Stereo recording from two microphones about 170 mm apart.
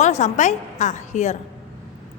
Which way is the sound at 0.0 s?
45° left (ahead or behind).